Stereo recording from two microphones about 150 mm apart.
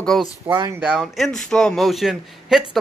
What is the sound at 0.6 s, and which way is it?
Speech, 20° right (ahead or behind).